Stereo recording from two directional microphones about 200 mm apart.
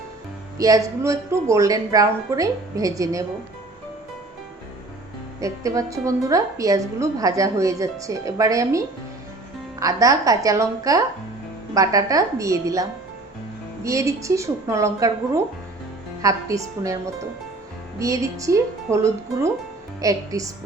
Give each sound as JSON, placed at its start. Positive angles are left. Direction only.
{"t": 0.6, "sound": "a woman's voice", "side_deg": -15}
{"t": 5.4, "sound": "a woman's voice", "side_deg": -15}
{"t": 9.8, "sound": "a woman's voice", "side_deg": -15}
{"t": 16.2, "sound": "a woman's voice", "side_deg": -15}